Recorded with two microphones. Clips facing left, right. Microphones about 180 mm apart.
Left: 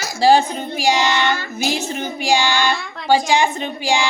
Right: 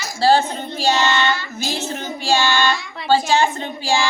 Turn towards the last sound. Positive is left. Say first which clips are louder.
# left 1 dB
turn(degrees=15)  # may be behind; listen again after turning